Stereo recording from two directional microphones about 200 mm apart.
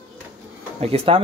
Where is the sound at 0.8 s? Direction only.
30° right (ahead or behind).